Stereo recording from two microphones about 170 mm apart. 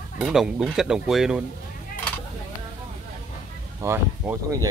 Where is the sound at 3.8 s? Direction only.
15° right (ahead or behind).